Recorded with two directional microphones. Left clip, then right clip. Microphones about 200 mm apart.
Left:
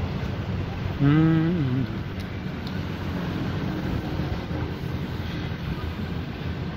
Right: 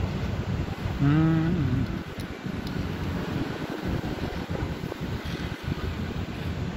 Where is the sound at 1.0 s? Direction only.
5° left (ahead or behind).